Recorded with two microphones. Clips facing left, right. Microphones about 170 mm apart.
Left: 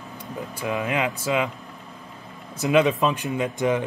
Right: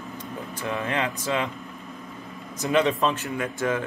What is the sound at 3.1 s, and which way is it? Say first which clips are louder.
Speech: left 3 dB; 15° left (ahead or behind).